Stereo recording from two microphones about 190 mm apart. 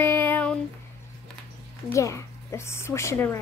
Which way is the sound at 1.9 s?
15° left (ahead or behind).